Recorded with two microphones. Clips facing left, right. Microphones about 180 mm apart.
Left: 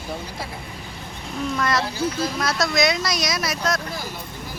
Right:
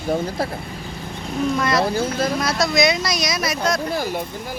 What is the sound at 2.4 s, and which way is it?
Speech, centre (ahead or behind).